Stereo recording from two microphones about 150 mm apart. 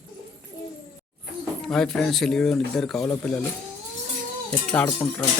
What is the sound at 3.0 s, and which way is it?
Speech, 20° left (ahead or behind).